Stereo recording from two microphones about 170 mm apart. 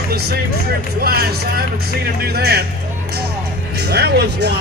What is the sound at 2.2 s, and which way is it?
Speech, 70° right (ahead or behind).